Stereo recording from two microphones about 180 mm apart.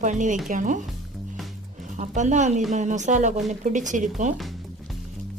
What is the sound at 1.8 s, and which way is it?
A woman's voice, 40° right (ahead or behind).